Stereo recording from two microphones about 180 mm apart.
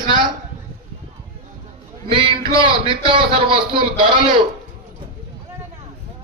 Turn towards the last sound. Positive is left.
turn(degrees=-25)  # may be behind; listen again after turning